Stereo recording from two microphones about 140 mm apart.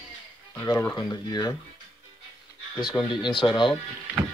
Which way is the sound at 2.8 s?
35° left (ahead or behind).